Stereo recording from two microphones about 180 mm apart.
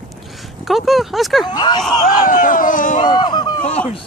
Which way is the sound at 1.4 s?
25° left (ahead or behind).